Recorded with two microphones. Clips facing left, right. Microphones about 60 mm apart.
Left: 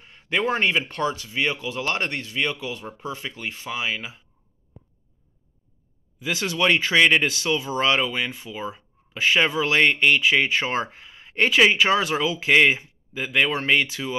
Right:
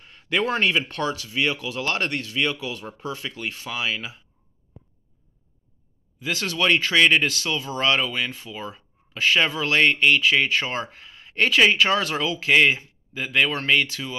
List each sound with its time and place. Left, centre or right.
0.0 s speech: centre
6.1 s speech: centre